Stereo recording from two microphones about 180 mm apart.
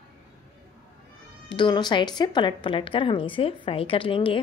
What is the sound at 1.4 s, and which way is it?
A woman's voice, 25° left (ahead or behind).